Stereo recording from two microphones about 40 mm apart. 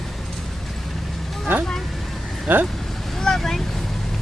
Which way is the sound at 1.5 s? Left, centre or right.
Right.